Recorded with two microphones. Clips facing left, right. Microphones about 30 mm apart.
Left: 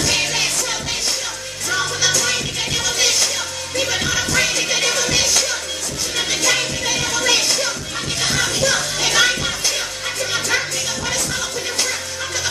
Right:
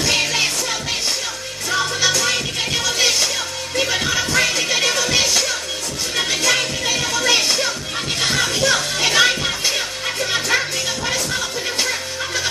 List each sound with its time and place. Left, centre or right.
0.0 s music: centre